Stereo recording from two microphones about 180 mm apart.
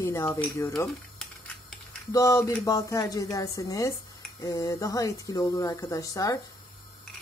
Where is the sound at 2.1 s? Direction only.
20° left (ahead or behind).